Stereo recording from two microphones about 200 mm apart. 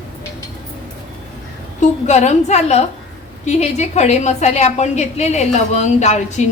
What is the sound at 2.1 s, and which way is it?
A woman's voice, 35° left (ahead or behind).